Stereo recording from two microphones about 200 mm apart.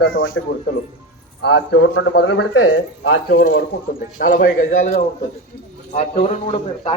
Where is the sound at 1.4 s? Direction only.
60° left (ahead or behind); by 3.2 s 80° left.